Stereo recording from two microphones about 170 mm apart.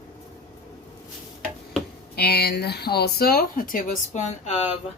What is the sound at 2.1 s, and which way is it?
Speech, 70° left (ahead or behind).